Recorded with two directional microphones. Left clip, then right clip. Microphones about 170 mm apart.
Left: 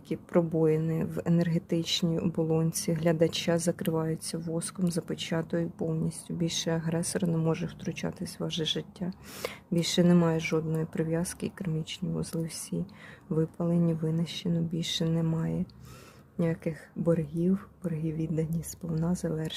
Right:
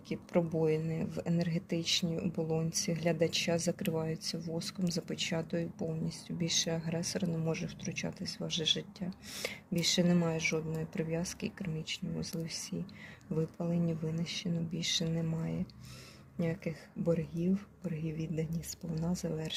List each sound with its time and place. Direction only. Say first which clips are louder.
0.1 s speech: left 5 dB; 35° left (ahead or behind)